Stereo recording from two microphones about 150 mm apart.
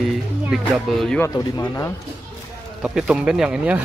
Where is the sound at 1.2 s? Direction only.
20° left (ahead or behind).